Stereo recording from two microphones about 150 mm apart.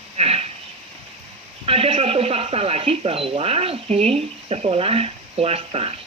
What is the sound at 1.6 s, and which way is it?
Speech, 40° right (ahead or behind).